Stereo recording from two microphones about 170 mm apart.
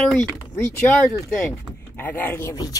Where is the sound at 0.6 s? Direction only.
15° left (ahead or behind).